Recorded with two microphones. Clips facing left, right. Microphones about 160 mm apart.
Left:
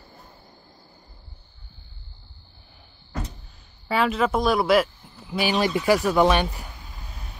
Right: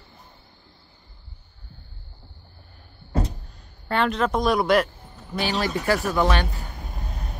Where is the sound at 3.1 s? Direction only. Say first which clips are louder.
Right 7 dB; 30° right (ahead or behind).